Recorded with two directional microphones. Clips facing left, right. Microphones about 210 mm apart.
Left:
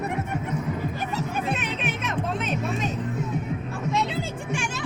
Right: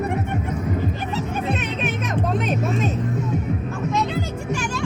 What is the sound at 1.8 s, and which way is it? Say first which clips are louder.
Music: right 4 dB; 40° right (ahead or behind).